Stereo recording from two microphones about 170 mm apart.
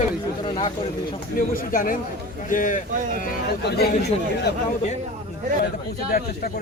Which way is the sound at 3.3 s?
70° left (ahead or behind).